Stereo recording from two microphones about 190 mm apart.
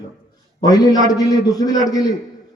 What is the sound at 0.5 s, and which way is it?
Speech, 20° left (ahead or behind).